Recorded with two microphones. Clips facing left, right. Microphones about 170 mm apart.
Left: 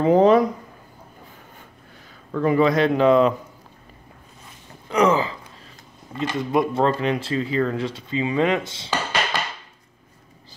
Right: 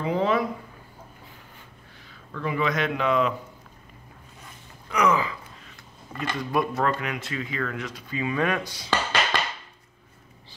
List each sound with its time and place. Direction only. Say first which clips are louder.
0.0 s speech: left 9 dB; 45° left (ahead or behind)
2.3 s speech: left 8 dB; 40° left (ahead or behind)
4.8 s speech: left 4 dB; 30° left (ahead or behind)